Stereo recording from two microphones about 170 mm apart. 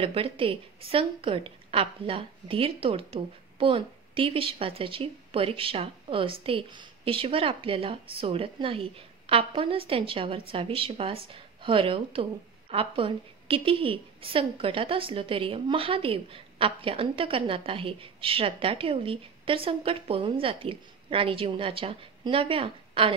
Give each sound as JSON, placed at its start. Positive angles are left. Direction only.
{"t": 0.0, "sound": "a woman's voice", "side_deg": -35}